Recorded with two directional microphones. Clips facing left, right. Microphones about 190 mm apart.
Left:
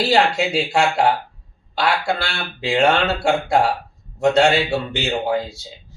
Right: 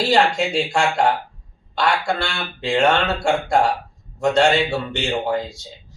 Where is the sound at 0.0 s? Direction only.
5° left (ahead or behind).